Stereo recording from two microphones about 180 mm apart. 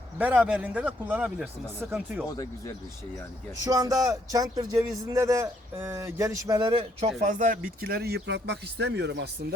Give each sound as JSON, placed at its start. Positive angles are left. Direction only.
{"t": 0.2, "sound": "a man's voice", "side_deg": -10}
{"t": 2.3, "sound": "speech", "side_deg": 20}
{"t": 3.6, "sound": "speech", "side_deg": -20}
{"t": 7.2, "sound": "speech", "side_deg": -45}